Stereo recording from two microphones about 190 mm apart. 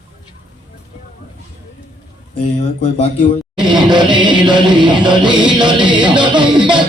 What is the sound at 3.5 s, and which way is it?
Music, 25° right (ahead or behind).